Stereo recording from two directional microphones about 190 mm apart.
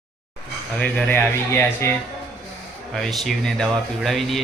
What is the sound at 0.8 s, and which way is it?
Speech, 10° left (ahead or behind).